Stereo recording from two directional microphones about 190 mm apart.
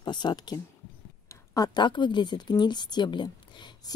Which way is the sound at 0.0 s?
25° left (ahead or behind).